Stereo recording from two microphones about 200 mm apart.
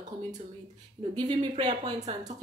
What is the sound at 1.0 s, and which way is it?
Speech, 25° right (ahead or behind).